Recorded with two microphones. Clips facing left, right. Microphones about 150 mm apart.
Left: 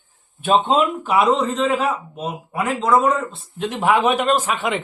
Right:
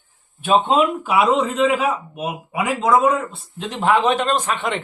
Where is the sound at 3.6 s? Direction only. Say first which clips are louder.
Even; 5° left (ahead or behind).